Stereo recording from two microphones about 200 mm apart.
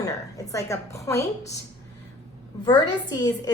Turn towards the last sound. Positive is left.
turn(degrees=20)  # may be behind; listen again after turning